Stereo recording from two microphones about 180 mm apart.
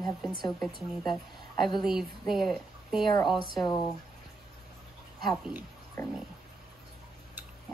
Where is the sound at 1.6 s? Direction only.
25° left (ahead or behind).